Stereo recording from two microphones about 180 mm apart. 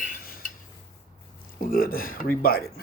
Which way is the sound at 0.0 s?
50° left (ahead or behind).